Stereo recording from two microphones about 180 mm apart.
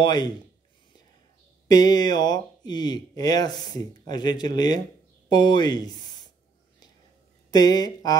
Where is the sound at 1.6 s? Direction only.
20° left (ahead or behind).